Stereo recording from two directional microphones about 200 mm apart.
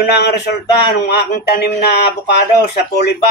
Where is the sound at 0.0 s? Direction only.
55° left (ahead or behind).